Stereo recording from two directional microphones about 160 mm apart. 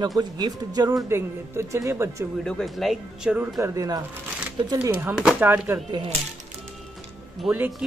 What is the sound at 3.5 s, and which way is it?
Speech, 20° right (ahead or behind).